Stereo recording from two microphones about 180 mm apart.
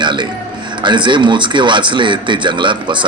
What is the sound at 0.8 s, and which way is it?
A man's voice, 25° right (ahead or behind).